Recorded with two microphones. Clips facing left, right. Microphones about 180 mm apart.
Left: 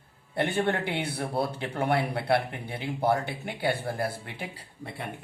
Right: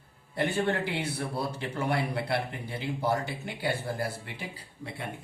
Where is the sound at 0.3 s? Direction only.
60° left (ahead or behind).